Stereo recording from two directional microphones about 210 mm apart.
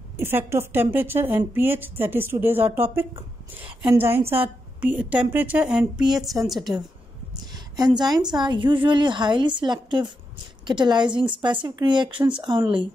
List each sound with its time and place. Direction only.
0.2 s a woman's voice: 10° right (ahead or behind)
7.7 s a woman's voice: 20° right (ahead or behind)